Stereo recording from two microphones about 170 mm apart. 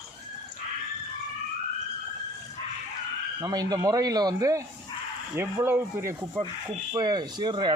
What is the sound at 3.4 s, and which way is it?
Speech, 20° right (ahead or behind).